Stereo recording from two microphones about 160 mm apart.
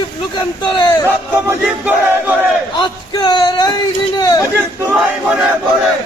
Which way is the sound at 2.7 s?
30° left (ahead or behind).